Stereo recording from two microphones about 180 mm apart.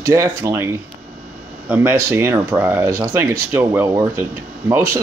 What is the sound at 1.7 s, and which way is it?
Speech, 10° right (ahead or behind).